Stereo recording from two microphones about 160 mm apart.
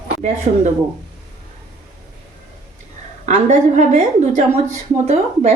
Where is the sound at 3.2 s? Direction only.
50° right (ahead or behind).